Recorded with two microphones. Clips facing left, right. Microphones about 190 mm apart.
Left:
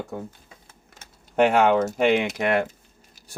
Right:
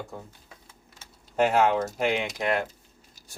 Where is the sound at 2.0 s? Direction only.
70° left (ahead or behind).